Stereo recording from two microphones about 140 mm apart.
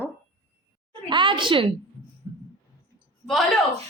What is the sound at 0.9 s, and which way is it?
Speech, 35° right (ahead or behind).